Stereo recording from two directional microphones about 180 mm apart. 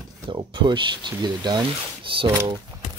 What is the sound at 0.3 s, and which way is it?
Speech, 25° right (ahead or behind).